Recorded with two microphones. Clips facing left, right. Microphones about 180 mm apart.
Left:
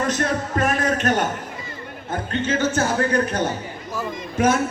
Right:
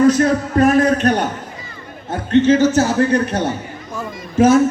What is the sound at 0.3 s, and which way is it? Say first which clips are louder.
Speech: right 8 dB; 40° right (ahead or behind).